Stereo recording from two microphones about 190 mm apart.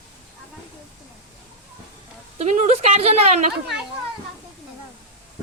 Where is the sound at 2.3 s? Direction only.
35° right (ahead or behind).